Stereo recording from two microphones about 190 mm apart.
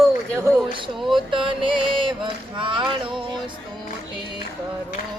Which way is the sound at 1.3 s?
25° right (ahead or behind).